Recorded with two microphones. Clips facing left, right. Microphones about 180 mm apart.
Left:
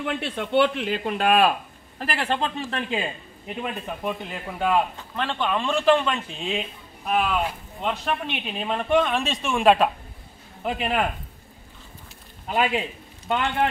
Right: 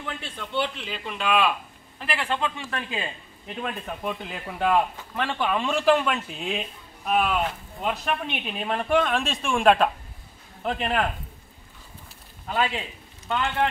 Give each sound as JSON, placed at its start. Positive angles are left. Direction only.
{"t": 0.0, "sound": "speech", "side_deg": 65}
{"t": 3.4, "sound": "speech", "side_deg": 5}
{"t": 7.8, "sound": "speech", "side_deg": -5}
{"t": 12.4, "sound": "speech", "side_deg": 15}